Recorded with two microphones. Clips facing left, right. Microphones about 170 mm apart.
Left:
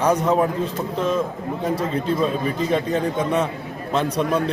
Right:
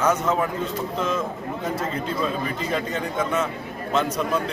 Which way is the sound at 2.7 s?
35° left (ahead or behind).